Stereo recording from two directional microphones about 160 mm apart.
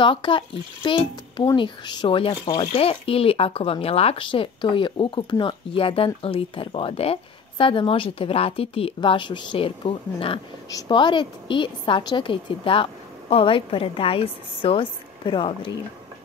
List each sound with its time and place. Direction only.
0.0 s speech: 30° left (ahead or behind)